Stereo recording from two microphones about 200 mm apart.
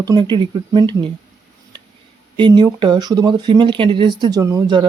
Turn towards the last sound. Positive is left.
turn(degrees=-20)  # may be behind; listen again after turning